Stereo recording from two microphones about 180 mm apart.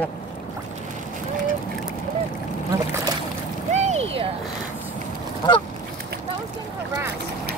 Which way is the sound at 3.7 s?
35° right (ahead or behind).